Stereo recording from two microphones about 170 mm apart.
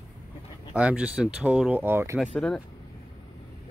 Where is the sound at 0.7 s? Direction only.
10° right (ahead or behind).